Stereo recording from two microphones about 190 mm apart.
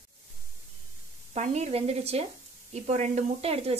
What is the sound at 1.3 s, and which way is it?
A woman's voice, 35° right (ahead or behind).